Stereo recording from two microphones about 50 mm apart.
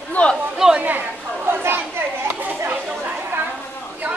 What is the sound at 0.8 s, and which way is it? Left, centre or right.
Chatter, right.